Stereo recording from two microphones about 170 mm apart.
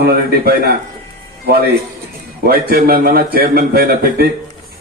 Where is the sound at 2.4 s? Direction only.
60° right (ahead or behind).